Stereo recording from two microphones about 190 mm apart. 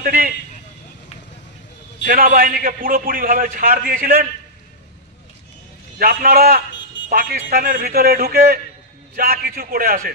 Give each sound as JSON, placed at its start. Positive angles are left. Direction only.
{"t": 0.0, "sound": "a man's voice", "side_deg": -50}
{"t": 2.0, "sound": "a man's voice", "side_deg": -50}
{"t": 5.9, "sound": "a man's voice", "side_deg": -50}